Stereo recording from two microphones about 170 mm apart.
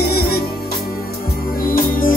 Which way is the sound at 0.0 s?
65° left (ahead or behind).